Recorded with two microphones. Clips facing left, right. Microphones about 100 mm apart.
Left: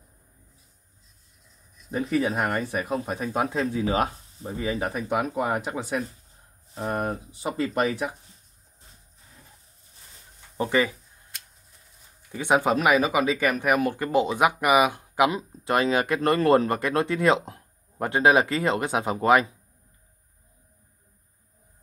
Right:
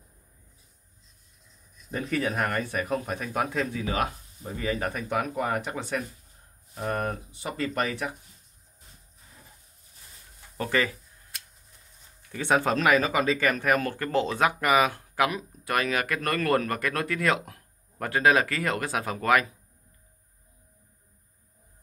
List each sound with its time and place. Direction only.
1.9 s speech: 5° left (ahead or behind)
2.9 s speech: 30° left (ahead or behind)
4.6 s speech: 5° left (ahead or behind)
5.2 s speech: 30° left (ahead or behind)
10.6 s speech: 20° left (ahead or behind)
12.3 s speech: 15° left (ahead or behind)